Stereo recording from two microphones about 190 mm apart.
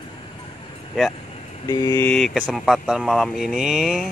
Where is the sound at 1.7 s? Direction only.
15° left (ahead or behind).